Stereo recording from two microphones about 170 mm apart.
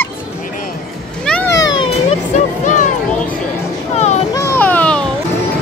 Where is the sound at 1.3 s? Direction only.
5° left (ahead or behind).